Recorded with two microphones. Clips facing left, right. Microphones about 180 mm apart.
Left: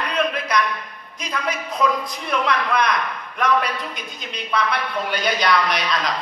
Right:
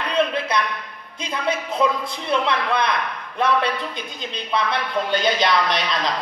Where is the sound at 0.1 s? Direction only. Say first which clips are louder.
Right 2 dB; 30° right (ahead or behind).